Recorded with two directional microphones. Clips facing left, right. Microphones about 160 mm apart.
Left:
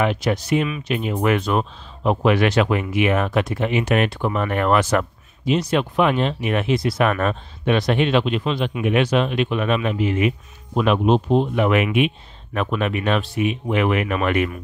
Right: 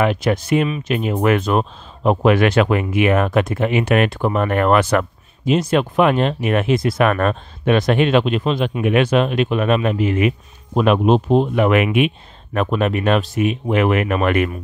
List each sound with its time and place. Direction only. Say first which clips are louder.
0.0 s speech: right 3 dB; 50° right (ahead or behind)
12.5 s speech: right 4 dB; 40° right (ahead or behind)